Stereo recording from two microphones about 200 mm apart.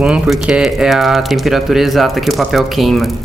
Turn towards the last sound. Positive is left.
turn(degrees=0)  # may be behind; listen again after turning